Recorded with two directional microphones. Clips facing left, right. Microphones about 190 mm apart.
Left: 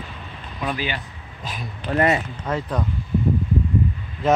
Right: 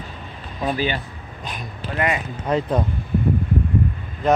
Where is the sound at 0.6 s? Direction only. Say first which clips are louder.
Right 4 dB; 35° right (ahead or behind).